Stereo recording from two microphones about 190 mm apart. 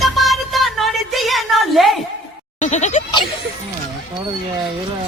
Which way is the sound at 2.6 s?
40° left (ahead or behind).